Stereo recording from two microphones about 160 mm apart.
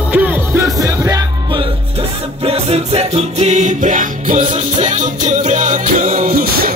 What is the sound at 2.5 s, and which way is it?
Music, 40° right (ahead or behind).